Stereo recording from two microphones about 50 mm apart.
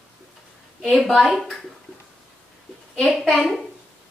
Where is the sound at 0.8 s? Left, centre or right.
Centre.